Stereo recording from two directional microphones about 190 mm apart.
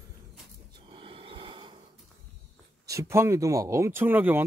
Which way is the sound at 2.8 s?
15° right (ahead or behind).